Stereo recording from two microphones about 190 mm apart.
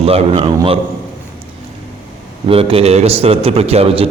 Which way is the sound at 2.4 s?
30° right (ahead or behind).